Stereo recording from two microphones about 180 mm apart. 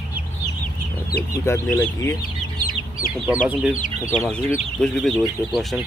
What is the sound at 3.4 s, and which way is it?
Speech, 5° right (ahead or behind).